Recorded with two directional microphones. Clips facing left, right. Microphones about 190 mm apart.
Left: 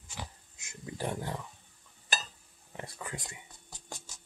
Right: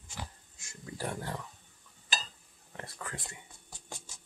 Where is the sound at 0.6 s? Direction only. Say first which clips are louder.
Left 2 dB; 20° left (ahead or behind).